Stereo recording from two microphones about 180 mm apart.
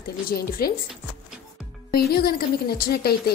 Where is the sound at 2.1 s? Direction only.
55° left (ahead or behind).